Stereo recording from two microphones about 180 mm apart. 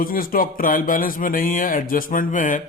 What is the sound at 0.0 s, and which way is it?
Speech, 55° left (ahead or behind).